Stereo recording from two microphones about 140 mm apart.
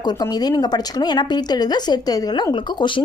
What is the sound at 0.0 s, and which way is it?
Speech, 30° left (ahead or behind).